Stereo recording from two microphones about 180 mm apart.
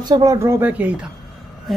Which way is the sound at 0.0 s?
20° right (ahead or behind).